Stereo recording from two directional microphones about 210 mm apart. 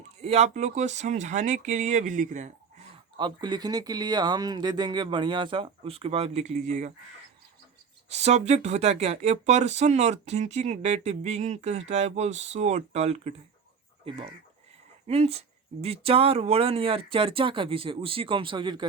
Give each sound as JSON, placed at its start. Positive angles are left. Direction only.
{"t": 0.2, "sound": "speech", "side_deg": -30}
{"t": 3.2, "sound": "speech", "side_deg": -20}
{"t": 8.1, "sound": "speech", "side_deg": -30}